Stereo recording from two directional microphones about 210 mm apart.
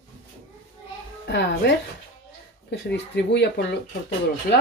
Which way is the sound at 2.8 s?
55° left (ahead or behind).